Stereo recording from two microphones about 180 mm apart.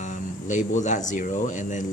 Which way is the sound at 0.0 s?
45° left (ahead or behind).